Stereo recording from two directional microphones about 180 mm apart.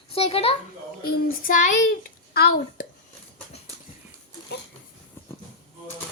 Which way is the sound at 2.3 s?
60° left (ahead or behind).